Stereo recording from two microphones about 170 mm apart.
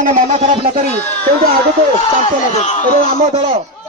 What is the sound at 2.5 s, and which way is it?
Speech, 45° left (ahead or behind).